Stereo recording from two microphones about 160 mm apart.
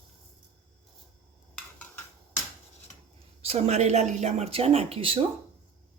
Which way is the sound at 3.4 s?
40° right (ahead or behind).